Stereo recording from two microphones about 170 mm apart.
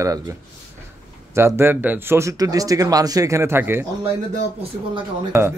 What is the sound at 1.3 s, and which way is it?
Speech, 15° right (ahead or behind).